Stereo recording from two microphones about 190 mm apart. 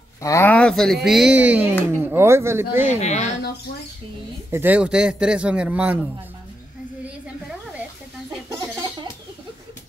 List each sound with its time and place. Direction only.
0.2 s speech: 15° left (ahead or behind); by 2.8 s 15° right (ahead or behind)
3.0 s speech: 35° left (ahead or behind)
4.5 s speech: 10° right (ahead or behind)